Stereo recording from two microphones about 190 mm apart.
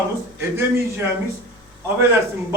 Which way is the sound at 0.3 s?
15° right (ahead or behind).